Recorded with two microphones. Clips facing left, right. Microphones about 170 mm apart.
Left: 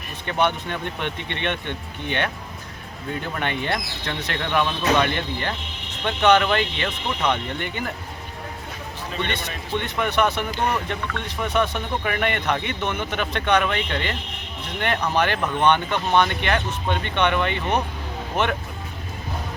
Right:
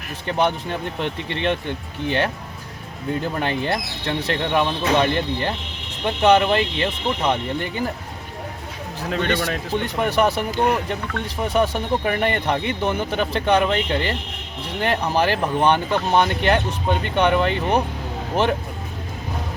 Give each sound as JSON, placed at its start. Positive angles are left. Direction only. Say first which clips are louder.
{"t": 0.3, "sound": "speech", "louder": "right 2 dB", "side_deg": -35}
{"t": 3.3, "sound": "speech", "louder": "right 3 dB", "side_deg": -35}
{"t": 9.7, "sound": "speech", "louder": "right 2 dB", "side_deg": -35}